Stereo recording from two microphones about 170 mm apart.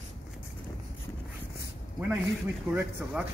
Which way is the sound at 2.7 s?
10° right (ahead or behind).